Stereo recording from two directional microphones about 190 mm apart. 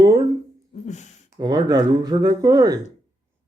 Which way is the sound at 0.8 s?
40° left (ahead or behind).